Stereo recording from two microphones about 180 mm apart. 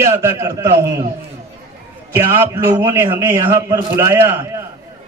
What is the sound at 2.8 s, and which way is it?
A man's voice, 15° right (ahead or behind).